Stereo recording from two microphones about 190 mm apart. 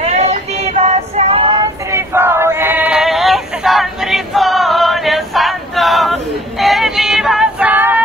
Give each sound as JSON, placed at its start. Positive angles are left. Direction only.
{"t": 0.0, "sound": "child singing", "side_deg": -35}